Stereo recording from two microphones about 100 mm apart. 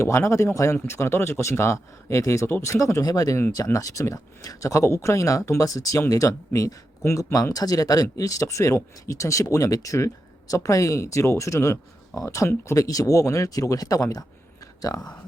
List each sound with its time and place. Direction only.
0.0 s speech: 25° left (ahead or behind)